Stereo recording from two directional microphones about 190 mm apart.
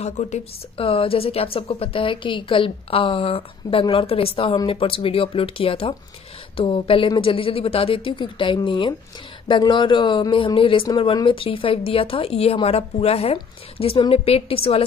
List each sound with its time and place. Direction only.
0.0 s a woman's voice: 35° left (ahead or behind)